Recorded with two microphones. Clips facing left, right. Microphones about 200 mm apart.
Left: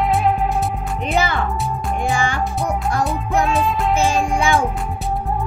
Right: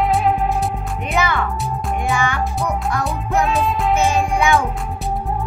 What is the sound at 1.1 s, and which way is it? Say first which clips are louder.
Music: even; 30° left (ahead or behind).